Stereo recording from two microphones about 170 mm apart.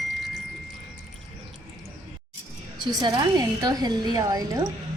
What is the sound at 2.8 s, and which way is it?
A woman's voice, 25° right (ahead or behind).